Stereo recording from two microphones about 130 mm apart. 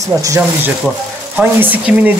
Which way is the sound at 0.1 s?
20° right (ahead or behind).